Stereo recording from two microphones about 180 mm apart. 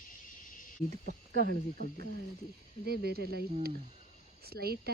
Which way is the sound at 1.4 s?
55° right (ahead or behind).